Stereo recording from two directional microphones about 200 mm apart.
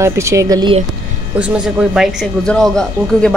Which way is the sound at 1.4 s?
5° right (ahead or behind).